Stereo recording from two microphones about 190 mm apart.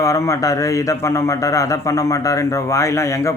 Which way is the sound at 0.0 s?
15° left (ahead or behind).